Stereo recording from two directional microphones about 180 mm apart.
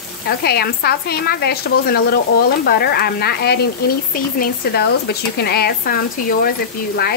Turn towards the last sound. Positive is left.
turn(degrees=55)  # may be behind; listen again after turning